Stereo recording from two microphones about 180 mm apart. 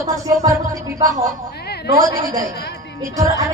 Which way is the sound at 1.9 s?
20° right (ahead or behind).